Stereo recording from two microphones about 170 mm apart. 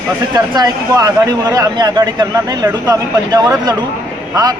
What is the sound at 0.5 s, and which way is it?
Speech, 20° right (ahead or behind).